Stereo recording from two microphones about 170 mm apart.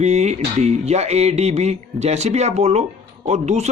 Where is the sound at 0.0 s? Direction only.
40° right (ahead or behind).